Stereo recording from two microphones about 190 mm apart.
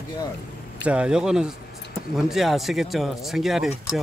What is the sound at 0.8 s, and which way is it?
Speech, 5° right (ahead or behind).